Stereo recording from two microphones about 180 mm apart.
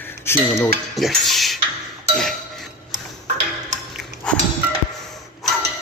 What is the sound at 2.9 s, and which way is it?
Tick-tock, 40° right (ahead or behind).